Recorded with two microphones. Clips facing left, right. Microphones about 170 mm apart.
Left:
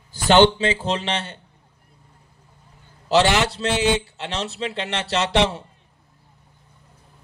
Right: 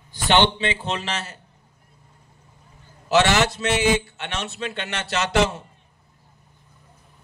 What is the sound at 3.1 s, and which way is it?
A man's voice, 30° left (ahead or behind).